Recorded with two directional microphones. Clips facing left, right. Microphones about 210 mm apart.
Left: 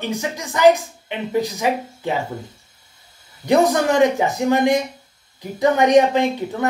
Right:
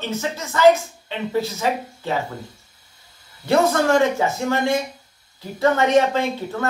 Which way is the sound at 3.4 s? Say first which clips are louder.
Left 2 dB; 15° left (ahead or behind).